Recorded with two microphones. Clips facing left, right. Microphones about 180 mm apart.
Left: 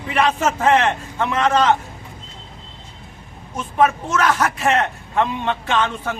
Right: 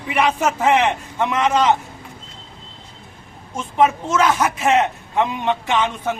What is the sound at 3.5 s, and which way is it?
Speech, 20° right (ahead or behind).